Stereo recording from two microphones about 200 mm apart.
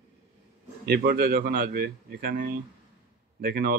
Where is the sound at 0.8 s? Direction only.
50° right (ahead or behind).